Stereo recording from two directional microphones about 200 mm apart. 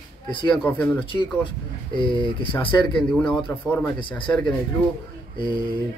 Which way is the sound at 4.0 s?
25° left (ahead or behind).